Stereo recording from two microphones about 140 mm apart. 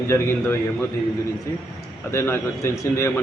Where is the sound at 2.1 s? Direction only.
15° left (ahead or behind).